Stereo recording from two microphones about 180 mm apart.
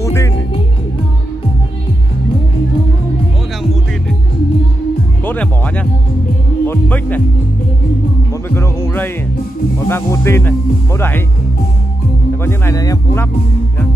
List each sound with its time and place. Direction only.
0.0 s music: 15° left (ahead or behind)
5.2 s music: 10° left (ahead or behind)
8.5 s music: 10° left (ahead or behind)
9.8 s speech: 15° left (ahead or behind)
12.4 s speech: 15° left (ahead or behind)